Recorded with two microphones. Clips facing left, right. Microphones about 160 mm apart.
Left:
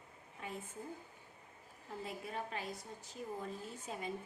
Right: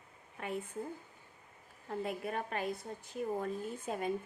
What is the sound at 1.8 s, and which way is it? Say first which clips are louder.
A woman's voice: right 7 dB; 60° right (ahead or behind).